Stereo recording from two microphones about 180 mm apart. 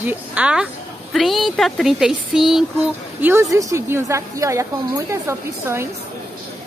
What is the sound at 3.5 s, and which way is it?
A woman's voice, 15° right (ahead or behind).